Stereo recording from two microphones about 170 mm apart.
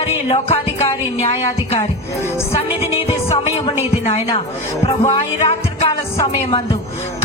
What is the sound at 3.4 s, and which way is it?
Speech, 35° left (ahead or behind).